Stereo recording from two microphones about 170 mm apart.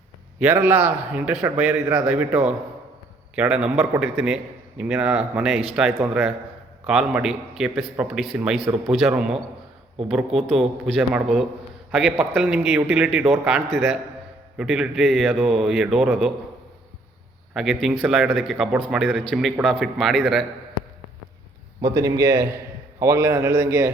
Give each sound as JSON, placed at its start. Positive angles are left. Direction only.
{"t": 0.3, "sound": "a man's voice", "side_deg": -10}
{"t": 12.1, "sound": "a man's voice", "side_deg": -10}
{"t": 14.6, "sound": "speech", "side_deg": 0}
{"t": 17.5, "sound": "a man's voice", "side_deg": 0}
{"t": 21.8, "sound": "a man's voice", "side_deg": -25}